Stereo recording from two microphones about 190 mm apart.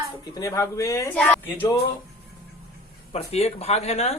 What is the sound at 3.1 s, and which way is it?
Speech, 35° left (ahead or behind).